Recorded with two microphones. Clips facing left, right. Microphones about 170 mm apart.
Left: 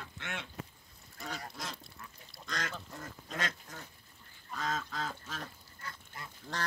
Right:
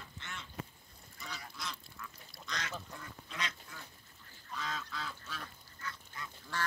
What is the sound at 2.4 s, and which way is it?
Duck, 45° left (ahead or behind).